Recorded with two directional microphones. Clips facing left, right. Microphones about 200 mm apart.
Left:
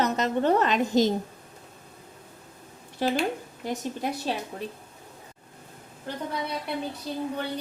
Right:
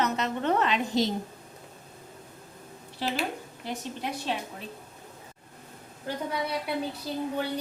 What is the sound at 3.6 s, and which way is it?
Speech, 40° left (ahead or behind).